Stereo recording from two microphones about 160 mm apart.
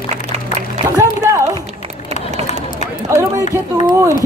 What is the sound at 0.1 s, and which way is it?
Music, 45° right (ahead or behind).